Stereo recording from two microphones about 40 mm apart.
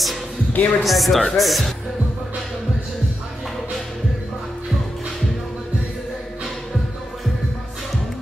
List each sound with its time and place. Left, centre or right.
0.5 s speech: left
0.8 s speech: centre